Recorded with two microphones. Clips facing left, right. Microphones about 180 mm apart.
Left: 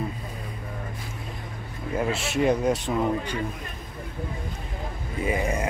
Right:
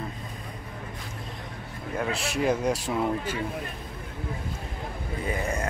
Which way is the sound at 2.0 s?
Centre (ahead or behind).